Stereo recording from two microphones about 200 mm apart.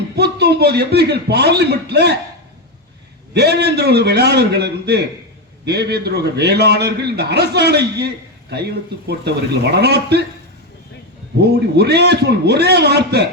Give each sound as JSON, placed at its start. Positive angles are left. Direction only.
{"t": 0.2, "sound": "a man's voice", "side_deg": -55}
{"t": 3.3, "sound": "a man's voice", "side_deg": -55}
{"t": 11.3, "sound": "a man's voice", "side_deg": -55}